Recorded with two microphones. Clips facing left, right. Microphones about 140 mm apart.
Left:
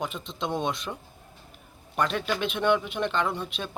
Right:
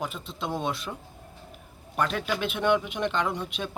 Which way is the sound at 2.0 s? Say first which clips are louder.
Left 1 dB; 5° right (ahead or behind).